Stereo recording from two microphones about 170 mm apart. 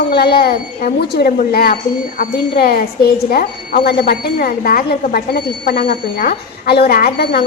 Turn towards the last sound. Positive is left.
turn(degrees=65)  # may be behind; listen again after turning